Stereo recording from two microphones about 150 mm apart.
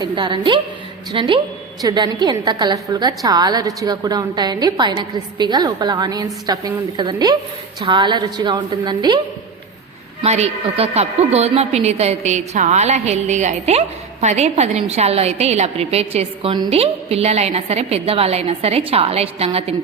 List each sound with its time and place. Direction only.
0.0 s a woman's voice: 30° right (ahead or behind)
10.2 s a woman's voice: 45° right (ahead or behind)